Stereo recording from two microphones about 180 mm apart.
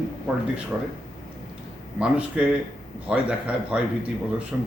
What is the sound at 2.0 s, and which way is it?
Speech, 5° right (ahead or behind).